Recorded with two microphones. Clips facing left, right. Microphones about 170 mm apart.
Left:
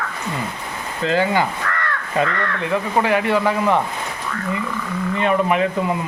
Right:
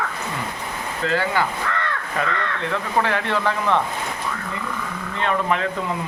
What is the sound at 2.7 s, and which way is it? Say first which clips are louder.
Speech: left 4 dB; 10° left (ahead or behind).